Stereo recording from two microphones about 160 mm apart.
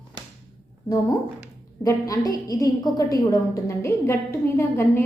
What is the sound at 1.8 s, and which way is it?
A woman's voice, 20° left (ahead or behind).